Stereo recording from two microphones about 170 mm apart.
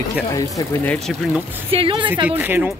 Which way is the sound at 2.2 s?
10° right (ahead or behind).